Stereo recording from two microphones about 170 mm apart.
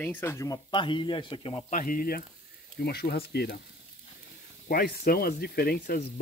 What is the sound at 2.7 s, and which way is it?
Speech, 65° left (ahead or behind).